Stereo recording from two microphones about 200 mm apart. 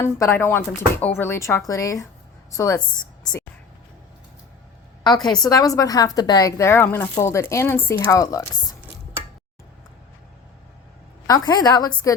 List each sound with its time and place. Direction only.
0.0 s speech: 15° left (ahead or behind)
5.0 s a woman's voice: 20° left (ahead or behind)
11.3 s a woman's voice: 20° left (ahead or behind)